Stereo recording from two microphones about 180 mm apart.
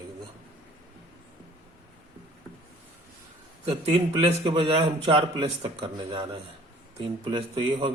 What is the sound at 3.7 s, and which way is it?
A man's voice, 35° right (ahead or behind).